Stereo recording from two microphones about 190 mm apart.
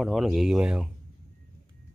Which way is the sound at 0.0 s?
Centre (ahead or behind).